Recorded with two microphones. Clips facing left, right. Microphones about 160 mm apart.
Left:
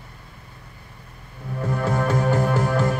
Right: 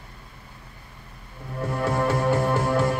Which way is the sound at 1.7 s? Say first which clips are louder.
Left 1 dB; 30° right (ahead or behind).